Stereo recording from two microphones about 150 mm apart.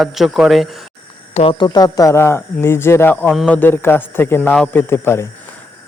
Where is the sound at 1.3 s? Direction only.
35° left (ahead or behind); by 5.3 s 15° left (ahead or behind).